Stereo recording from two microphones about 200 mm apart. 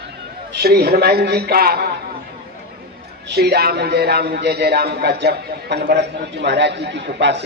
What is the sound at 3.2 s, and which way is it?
A man's voice, 55° right (ahead or behind).